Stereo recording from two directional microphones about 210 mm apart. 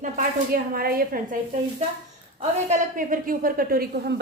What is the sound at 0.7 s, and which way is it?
Speech, 45° right (ahead or behind).